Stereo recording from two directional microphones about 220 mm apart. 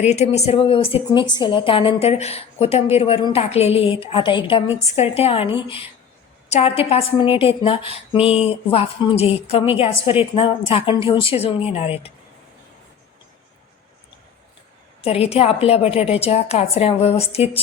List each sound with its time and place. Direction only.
0.0 s a woman's voice: 30° left (ahead or behind)
15.0 s a woman's voice: 25° left (ahead or behind)